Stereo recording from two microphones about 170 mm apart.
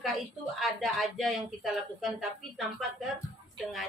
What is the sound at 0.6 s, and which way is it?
Speech, centre (ahead or behind).